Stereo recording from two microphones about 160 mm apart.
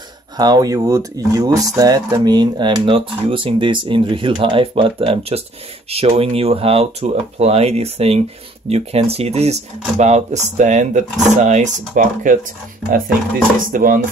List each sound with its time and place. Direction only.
0.4 s speech: 25° right (ahead or behind); by 12.4 s 55° right (ahead or behind)
13.7 s dishes: 60° right (ahead or behind)